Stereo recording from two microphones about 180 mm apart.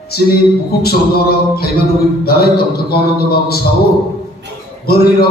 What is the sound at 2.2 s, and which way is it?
A man's voice, 60° left (ahead or behind).